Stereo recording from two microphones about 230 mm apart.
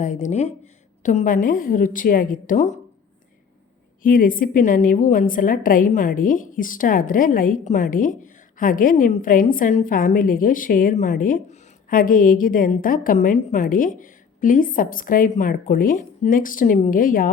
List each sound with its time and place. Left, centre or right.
0.0 s a woman's voice: left
4.0 s a woman's voice: left